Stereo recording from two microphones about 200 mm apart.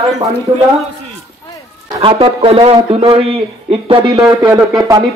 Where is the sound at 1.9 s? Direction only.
30° right (ahead or behind).